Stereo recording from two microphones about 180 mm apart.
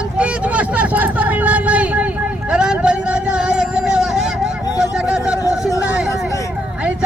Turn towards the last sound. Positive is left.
turn(degrees=-5)  # may be behind; listen again after turning